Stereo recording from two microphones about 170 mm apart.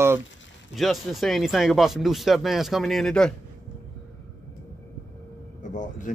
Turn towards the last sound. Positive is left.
turn(degrees=50)  # may be behind; listen again after turning